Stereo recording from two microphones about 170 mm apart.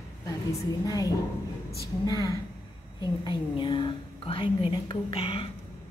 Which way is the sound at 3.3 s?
30° left (ahead or behind).